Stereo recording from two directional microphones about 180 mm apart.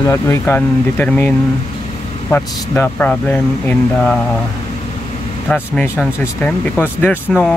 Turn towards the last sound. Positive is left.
turn(degrees=10)  # may be behind; listen again after turning